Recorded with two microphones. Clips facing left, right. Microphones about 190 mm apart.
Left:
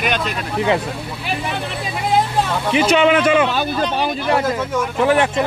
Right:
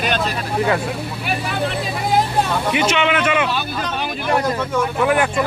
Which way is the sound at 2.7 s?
30° left (ahead or behind).